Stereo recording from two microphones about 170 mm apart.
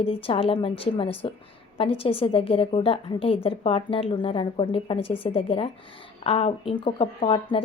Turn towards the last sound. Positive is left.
turn(degrees=30)  # may be behind; listen again after turning